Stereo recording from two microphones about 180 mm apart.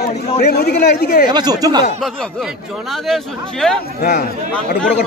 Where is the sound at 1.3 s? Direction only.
20° right (ahead or behind).